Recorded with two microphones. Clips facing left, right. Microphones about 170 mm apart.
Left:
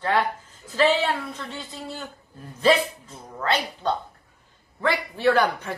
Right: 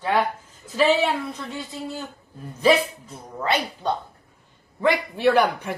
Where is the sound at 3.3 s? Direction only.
15° right (ahead or behind).